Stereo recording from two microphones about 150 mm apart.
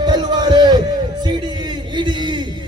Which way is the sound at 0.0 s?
30° right (ahead or behind).